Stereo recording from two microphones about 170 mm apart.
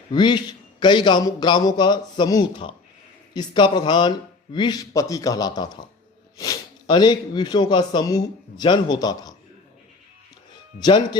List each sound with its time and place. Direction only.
0.1 s speech: 25° left (ahead or behind)
10.8 s speech: 25° left (ahead or behind)